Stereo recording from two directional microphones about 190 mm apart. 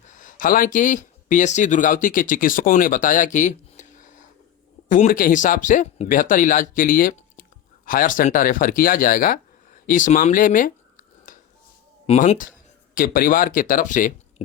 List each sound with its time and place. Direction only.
0.2 s speech: 45° left (ahead or behind)
9.8 s a sound: 45° left (ahead or behind)
12.0 s speech: 35° left (ahead or behind)